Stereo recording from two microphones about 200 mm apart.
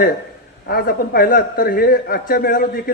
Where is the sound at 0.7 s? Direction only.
50° left (ahead or behind).